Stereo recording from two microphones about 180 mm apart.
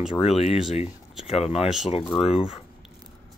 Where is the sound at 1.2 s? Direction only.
35° left (ahead or behind).